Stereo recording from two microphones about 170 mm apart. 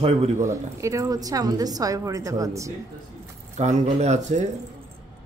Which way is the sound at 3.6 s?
40° right (ahead or behind).